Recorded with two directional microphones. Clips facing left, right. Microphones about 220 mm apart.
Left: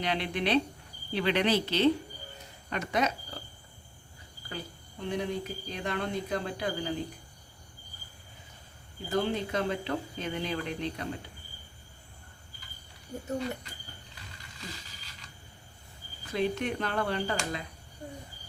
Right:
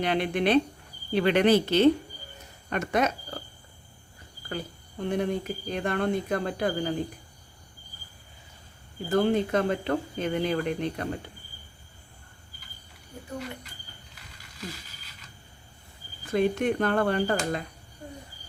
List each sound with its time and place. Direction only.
0.0 s speech: 50° right (ahead or behind)
4.4 s speech: 50° right (ahead or behind)
9.0 s speech: 50° right (ahead or behind)
16.3 s speech: 50° right (ahead or behind)